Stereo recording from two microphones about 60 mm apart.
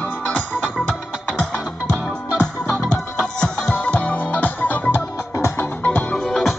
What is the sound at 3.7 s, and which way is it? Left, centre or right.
Music, left.